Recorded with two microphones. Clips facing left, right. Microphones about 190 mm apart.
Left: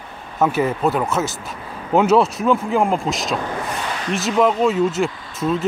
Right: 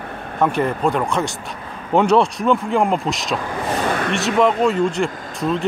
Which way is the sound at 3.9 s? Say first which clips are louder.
Right 5 dB; 55° right (ahead or behind).